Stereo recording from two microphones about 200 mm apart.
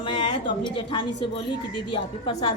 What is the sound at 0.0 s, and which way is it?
A woman's voice, 25° left (ahead or behind).